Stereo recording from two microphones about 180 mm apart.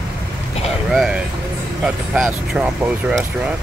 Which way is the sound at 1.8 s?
5° right (ahead or behind).